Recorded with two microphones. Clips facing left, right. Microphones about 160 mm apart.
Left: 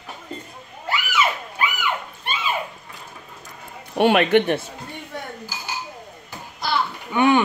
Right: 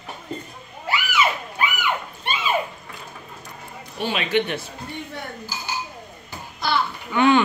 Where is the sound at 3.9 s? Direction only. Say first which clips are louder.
Left 7 dB; 60° left (ahead or behind).